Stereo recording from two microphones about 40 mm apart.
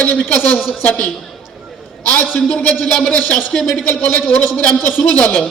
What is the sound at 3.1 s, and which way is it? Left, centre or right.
A man's voice, left.